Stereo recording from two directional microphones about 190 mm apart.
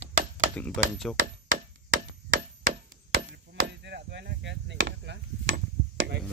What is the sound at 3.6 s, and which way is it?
Chop, 65° right (ahead or behind).